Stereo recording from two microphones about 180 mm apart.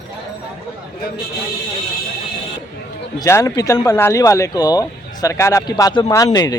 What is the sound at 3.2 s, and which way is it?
Speech, 15° left (ahead or behind).